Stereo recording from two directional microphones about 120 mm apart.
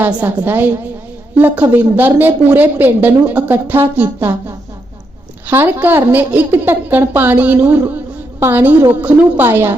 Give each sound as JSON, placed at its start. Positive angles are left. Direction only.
{"t": 0.0, "sound": "a woman's voice", "side_deg": -15}